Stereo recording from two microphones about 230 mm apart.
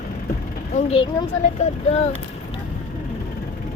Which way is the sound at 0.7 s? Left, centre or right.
Left.